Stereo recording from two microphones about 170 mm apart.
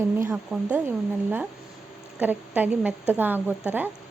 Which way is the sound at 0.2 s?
15° right (ahead or behind).